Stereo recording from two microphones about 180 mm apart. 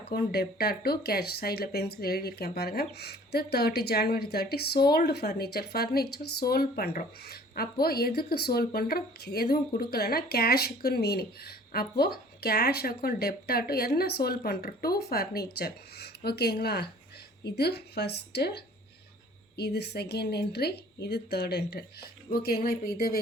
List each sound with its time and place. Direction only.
0.0 s speech: 60° left (ahead or behind)